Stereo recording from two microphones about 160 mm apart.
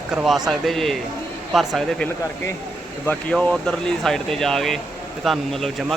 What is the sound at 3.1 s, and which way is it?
A man's voice, 5° left (ahead or behind).